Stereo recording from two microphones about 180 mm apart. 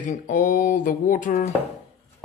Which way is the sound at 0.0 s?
45° left (ahead or behind).